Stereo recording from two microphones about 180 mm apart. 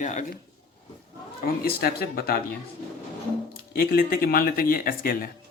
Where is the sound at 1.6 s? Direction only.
60° left (ahead or behind).